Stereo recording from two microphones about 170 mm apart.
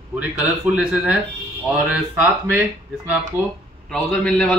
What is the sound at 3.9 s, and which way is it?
Speech, 5° left (ahead or behind).